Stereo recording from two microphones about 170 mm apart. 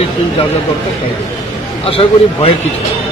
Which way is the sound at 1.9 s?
35° left (ahead or behind).